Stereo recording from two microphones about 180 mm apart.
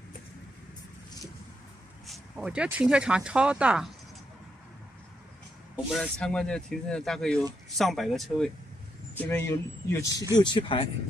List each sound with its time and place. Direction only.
2.0 s speech: 5° right (ahead or behind)
5.9 s speech: 5° left (ahead or behind); by 10.9 s 25° left (ahead or behind)